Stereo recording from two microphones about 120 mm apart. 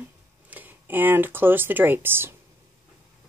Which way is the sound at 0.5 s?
15° right (ahead or behind).